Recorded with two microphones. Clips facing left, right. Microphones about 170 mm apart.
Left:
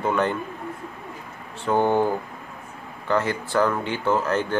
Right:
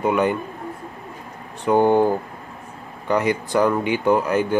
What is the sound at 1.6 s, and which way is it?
Speech, 15° right (ahead or behind).